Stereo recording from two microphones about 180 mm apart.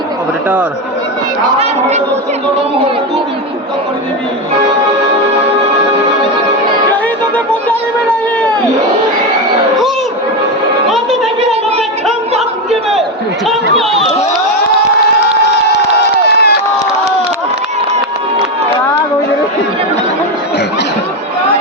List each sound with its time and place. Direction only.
16.1 s crowd: 65° left (ahead or behind)